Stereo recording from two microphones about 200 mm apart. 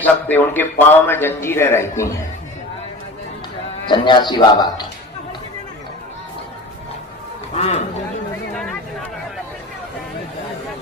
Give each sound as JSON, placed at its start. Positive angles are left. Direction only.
{"t": 0.0, "sound": "a man's voice", "side_deg": 10}
{"t": 3.8, "sound": "a man's voice", "side_deg": 25}
{"t": 7.5, "sound": "speech", "side_deg": 35}
{"t": 8.5, "sound": "a sound", "side_deg": 5}